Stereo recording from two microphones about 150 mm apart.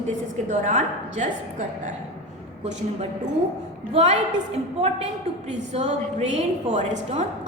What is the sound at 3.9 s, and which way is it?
Speech, 45° right (ahead or behind).